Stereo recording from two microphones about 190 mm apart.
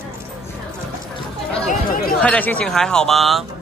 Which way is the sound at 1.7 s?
50° left (ahead or behind).